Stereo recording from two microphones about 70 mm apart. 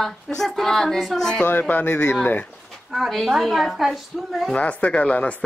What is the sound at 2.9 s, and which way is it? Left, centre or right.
A woman's voice, centre.